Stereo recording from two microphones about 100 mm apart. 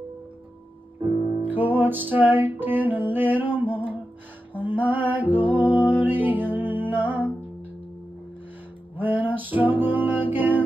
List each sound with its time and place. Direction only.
1.4 s music: 20° right (ahead or behind)
8.9 s music: 20° right (ahead or behind)